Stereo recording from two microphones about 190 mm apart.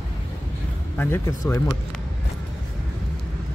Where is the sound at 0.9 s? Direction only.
15° left (ahead or behind).